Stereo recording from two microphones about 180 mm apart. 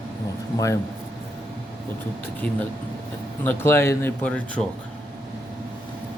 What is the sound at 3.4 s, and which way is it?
Speech, 15° left (ahead or behind).